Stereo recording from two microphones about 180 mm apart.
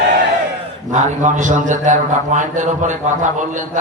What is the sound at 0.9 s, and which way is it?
A man's voice, 45° right (ahead or behind).